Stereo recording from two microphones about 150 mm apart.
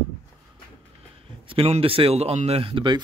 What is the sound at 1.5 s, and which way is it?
Speech, 40° right (ahead or behind).